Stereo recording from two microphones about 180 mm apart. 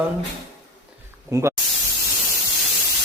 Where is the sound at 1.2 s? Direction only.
15° right (ahead or behind).